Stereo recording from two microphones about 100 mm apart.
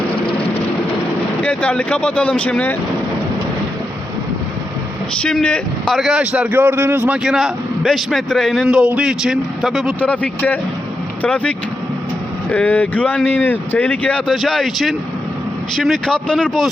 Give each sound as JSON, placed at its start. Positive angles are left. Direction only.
{"t": 1.4, "sound": "speech", "side_deg": 10}
{"t": 5.2, "sound": "speech", "side_deg": 10}
{"t": 5.9, "sound": "speech", "side_deg": 0}
{"t": 7.1, "sound": "a man's voice", "side_deg": -5}
{"t": 10.0, "sound": "a man's voice", "side_deg": 15}